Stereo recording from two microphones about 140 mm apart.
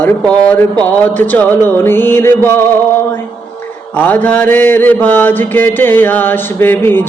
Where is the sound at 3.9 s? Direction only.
10° left (ahead or behind).